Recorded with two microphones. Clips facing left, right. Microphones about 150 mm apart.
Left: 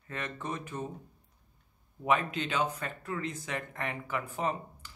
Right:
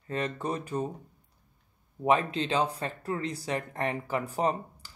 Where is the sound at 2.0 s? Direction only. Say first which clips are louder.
Right 4 dB; 35° right (ahead or behind).